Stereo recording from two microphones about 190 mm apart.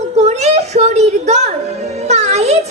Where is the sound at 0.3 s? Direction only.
35° right (ahead or behind).